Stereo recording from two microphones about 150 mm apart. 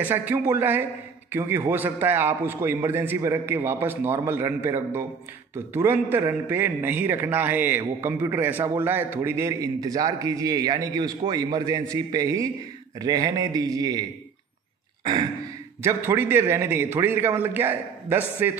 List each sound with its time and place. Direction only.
0.0 s a man's voice: 10° right (ahead or behind)
15.8 s a man's voice: 20° right (ahead or behind)